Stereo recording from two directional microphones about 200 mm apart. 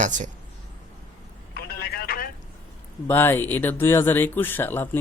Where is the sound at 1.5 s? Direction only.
50° left (ahead or behind).